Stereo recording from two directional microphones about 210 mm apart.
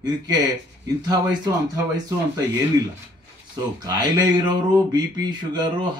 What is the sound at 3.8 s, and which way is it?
Speech, 20° right (ahead or behind).